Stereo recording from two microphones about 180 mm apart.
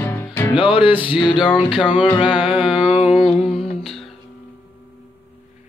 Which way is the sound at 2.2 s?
5° right (ahead or behind).